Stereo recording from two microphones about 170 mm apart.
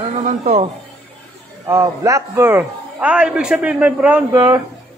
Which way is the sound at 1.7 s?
20° right (ahead or behind).